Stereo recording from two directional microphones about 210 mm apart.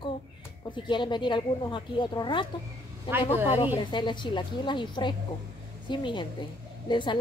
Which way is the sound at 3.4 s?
20° left (ahead or behind).